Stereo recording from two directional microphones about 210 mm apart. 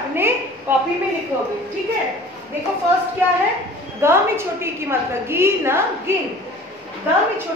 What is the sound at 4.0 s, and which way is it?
A woman's voice, 10° right (ahead or behind).